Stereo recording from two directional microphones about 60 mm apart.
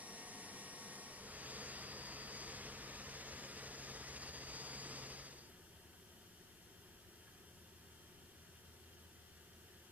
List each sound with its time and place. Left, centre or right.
0.0 s vacuum cleaner: right